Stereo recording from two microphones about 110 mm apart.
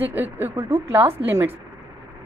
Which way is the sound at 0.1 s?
15° right (ahead or behind).